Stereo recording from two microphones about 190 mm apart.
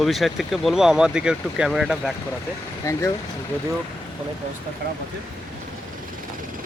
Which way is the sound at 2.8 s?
15° left (ahead or behind).